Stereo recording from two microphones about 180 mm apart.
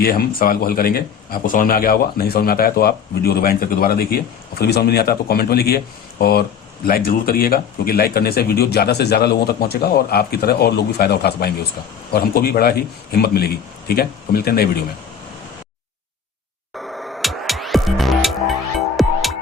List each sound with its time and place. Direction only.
0.0 s speech: 55° left (ahead or behind)
16.7 s music: centre (ahead or behind)